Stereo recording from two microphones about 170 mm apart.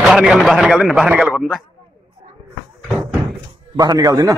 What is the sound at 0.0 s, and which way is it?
A man's voice, 5° right (ahead or behind).